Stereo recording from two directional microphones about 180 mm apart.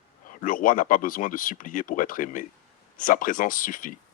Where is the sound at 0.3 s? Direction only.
50° left (ahead or behind).